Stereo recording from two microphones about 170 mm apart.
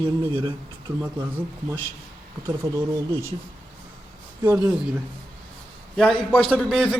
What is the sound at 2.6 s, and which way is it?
Speech, 20° right (ahead or behind).